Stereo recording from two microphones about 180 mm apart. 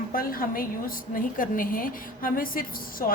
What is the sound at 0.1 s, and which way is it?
A woman's voice, 50° left (ahead or behind).